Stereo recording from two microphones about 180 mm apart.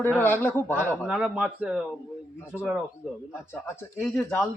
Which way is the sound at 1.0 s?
5° right (ahead or behind).